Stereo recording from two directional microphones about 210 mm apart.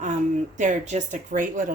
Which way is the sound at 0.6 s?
35° right (ahead or behind).